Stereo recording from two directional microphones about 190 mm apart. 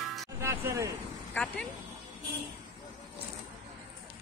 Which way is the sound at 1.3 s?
5° left (ahead or behind).